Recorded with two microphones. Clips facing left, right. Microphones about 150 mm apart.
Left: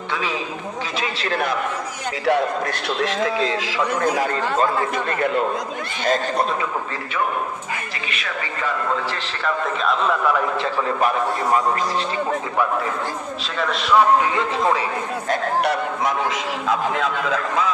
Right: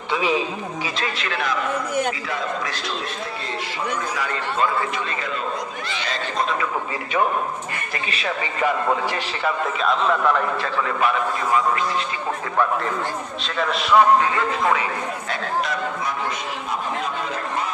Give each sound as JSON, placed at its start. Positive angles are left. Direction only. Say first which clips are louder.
{"t": 0.1, "sound": "a man's voice", "louder": "right 5 dB", "side_deg": -15}
{"t": 2.2, "sound": "a man's voice", "louder": "left 7 dB", "side_deg": 65}
{"t": 4.0, "sound": "speech", "louder": "left 6 dB", "side_deg": 45}
{"t": 10.6, "sound": "a man's voice", "louder": "left 2 dB", "side_deg": 35}
{"t": 13.6, "sound": "a man's voice", "louder": "even", "side_deg": 0}
{"t": 15.6, "sound": "a sound", "louder": "left 5 dB", "side_deg": 70}
{"t": 16.6, "sound": "a man's voice", "louder": "left 6 dB", "side_deg": 90}